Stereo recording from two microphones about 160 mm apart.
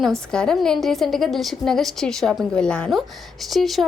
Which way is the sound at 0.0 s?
5° left (ahead or behind).